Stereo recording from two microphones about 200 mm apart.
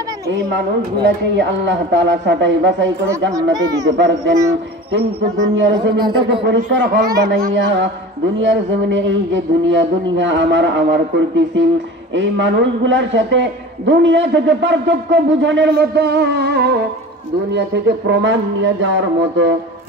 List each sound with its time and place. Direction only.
1.0 s a man's voice: 60° right (ahead or behind)
3.5 s speech: 20° right (ahead or behind)
3.9 s a man's voice: 65° right (ahead or behind)
5.9 s speech: 25° right (ahead or behind)
6.4 s a man's voice: 65° right (ahead or behind)